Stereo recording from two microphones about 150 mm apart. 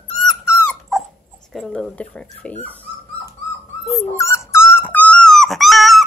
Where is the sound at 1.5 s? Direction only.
Centre (ahead or behind).